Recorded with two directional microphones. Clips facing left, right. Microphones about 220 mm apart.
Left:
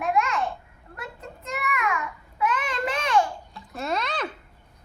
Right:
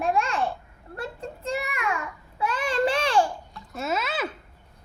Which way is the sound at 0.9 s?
30° right (ahead or behind).